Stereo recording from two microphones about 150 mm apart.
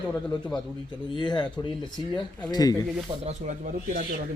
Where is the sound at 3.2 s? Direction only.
60° right (ahead or behind).